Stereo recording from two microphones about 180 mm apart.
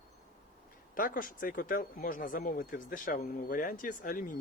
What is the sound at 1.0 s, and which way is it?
Speech, 50° left (ahead or behind).